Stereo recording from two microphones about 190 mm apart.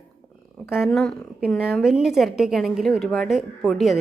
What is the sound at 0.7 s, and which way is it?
A woman's voice, centre (ahead or behind).